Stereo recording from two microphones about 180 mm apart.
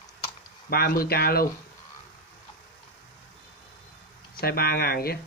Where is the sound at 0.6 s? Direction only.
55° left (ahead or behind).